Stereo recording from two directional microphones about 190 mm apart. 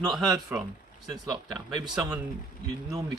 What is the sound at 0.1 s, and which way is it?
Speech, centre (ahead or behind).